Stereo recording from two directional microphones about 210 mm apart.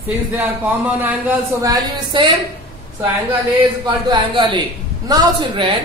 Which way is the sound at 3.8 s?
20° right (ahead or behind).